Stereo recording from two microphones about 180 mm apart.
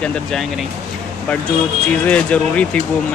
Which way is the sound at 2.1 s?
5° left (ahead or behind).